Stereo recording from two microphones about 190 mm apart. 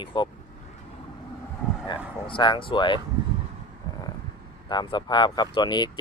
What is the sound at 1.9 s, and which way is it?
Speech, 25° left (ahead or behind).